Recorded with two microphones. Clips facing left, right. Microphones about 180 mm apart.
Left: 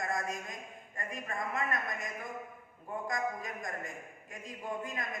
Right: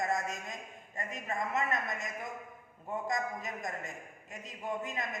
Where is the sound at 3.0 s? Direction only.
20° right (ahead or behind).